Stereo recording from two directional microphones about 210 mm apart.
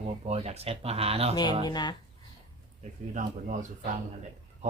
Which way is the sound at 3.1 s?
35° right (ahead or behind).